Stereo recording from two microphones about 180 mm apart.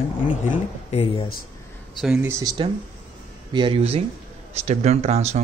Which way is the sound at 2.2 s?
15° right (ahead or behind).